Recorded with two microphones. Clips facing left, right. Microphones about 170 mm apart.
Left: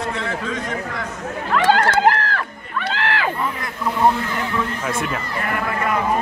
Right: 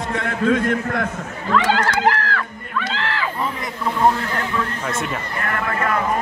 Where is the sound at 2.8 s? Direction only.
60° left (ahead or behind).